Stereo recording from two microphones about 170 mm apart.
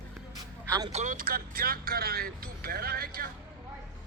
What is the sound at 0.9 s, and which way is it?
Speech, 50° right (ahead or behind).